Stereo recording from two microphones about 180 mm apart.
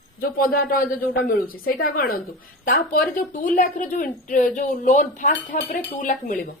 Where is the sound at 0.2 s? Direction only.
55° left (ahead or behind).